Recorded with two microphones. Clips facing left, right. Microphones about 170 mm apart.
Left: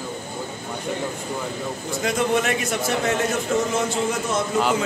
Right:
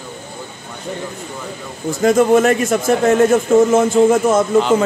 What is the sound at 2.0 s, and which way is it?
A man's voice, 45° right (ahead or behind).